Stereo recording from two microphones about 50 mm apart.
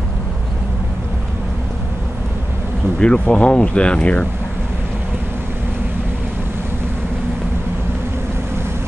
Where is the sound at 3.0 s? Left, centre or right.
Centre.